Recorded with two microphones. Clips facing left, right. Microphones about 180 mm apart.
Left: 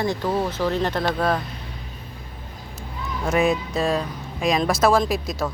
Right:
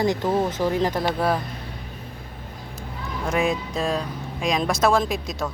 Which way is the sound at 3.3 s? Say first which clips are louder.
Left 3 dB; centre (ahead or behind).